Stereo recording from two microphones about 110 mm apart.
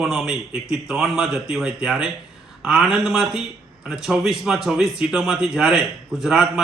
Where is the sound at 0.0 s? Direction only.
5° right (ahead or behind).